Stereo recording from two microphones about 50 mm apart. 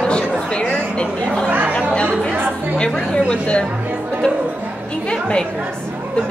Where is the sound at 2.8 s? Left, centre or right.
Left.